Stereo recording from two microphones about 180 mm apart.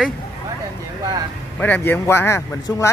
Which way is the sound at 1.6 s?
10° left (ahead or behind).